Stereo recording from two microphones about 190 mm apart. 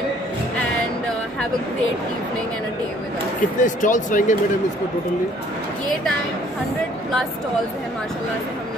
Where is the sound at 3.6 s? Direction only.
40° left (ahead or behind).